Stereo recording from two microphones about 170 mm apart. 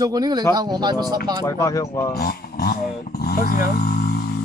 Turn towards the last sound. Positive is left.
turn(degrees=65)  # may be behind; listen again after turning